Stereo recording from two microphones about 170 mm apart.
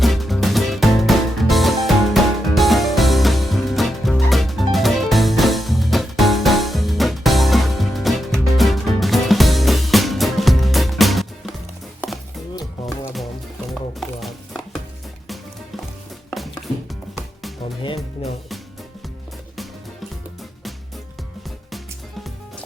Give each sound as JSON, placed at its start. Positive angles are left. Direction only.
{"t": 0.0, "sound": "music", "side_deg": 0}
{"t": 11.9, "sound": "a sound", "side_deg": 0}
{"t": 14.0, "sound": "music", "side_deg": 0}
{"t": 17.8, "sound": "music", "side_deg": 35}